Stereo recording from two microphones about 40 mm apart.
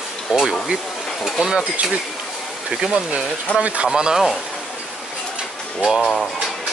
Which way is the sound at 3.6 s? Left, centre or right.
Right.